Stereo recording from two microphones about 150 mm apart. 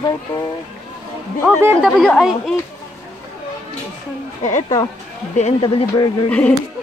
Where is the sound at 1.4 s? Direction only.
5° right (ahead or behind).